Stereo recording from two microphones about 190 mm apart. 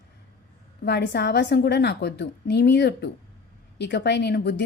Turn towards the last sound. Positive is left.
turn(degrees=60)  # may be behind; listen again after turning